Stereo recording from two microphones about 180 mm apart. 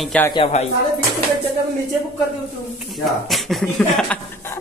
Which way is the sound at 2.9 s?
Centre (ahead or behind).